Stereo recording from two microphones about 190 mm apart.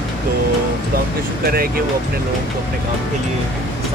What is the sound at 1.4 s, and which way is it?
Speech, 50° right (ahead or behind).